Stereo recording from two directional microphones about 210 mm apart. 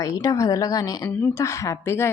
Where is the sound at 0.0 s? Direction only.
15° left (ahead or behind).